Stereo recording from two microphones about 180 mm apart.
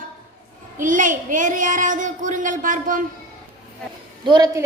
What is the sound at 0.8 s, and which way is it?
Speech, 45° right (ahead or behind).